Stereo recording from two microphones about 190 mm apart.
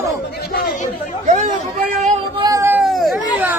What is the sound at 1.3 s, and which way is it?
Speech, 40° right (ahead or behind).